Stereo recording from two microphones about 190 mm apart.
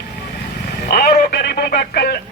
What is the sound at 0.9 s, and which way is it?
Telephone, 50° left (ahead or behind).